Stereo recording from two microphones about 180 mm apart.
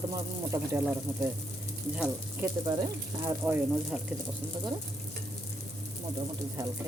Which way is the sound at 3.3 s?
10° right (ahead or behind).